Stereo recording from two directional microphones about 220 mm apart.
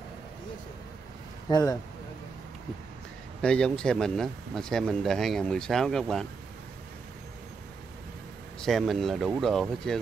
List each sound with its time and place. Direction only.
1.5 s speech: 15° left (ahead or behind)
3.4 s speech: 5° left (ahead or behind)
8.5 s speech: centre (ahead or behind)